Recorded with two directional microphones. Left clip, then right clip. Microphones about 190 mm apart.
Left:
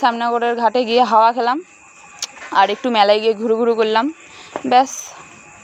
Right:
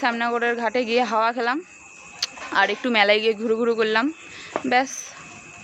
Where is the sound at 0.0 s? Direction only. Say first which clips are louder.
Left 6 dB; 15° left (ahead or behind).